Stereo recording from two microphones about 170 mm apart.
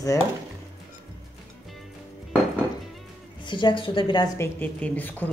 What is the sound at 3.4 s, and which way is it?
Speech, 30° left (ahead or behind).